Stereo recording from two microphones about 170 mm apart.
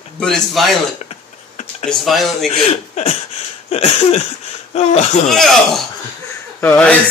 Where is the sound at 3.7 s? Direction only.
40° left (ahead or behind).